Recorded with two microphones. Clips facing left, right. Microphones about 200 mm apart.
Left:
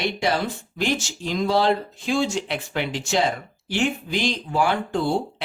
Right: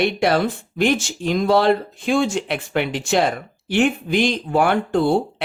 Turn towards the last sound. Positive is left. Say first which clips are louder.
# right 5 dB
turn(degrees=-60)  # may be behind; listen again after turning